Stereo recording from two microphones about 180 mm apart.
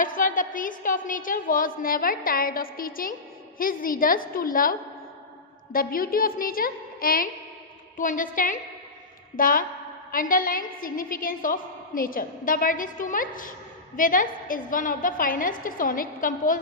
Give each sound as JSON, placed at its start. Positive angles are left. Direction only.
{"t": 0.0, "sound": "a woman's voice", "side_deg": 50}